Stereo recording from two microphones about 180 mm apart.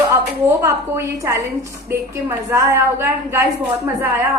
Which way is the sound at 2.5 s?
15° right (ahead or behind).